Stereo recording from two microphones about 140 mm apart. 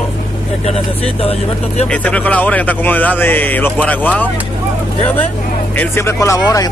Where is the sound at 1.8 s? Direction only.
10° left (ahead or behind).